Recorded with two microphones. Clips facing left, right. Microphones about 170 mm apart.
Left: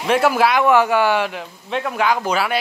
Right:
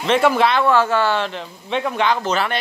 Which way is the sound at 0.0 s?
5° left (ahead or behind).